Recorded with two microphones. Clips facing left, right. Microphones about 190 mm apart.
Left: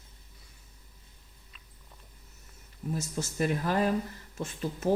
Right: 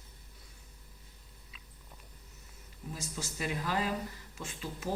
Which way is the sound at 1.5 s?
Centre (ahead or behind).